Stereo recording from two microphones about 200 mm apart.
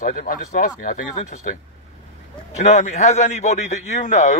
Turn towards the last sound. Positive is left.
turn(degrees=35)  # may be behind; listen again after turning